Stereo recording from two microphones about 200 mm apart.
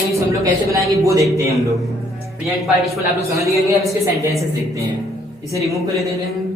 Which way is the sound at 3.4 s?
15° right (ahead or behind).